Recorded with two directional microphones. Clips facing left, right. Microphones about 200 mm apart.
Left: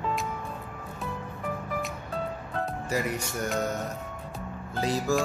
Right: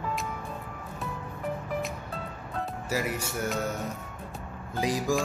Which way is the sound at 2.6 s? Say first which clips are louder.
Left 1 dB; 5° right (ahead or behind).